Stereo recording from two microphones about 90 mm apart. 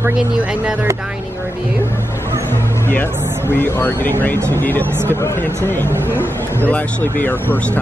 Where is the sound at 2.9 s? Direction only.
25° left (ahead or behind).